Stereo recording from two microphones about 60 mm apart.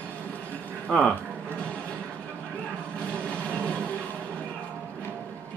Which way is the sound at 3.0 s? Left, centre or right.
Centre.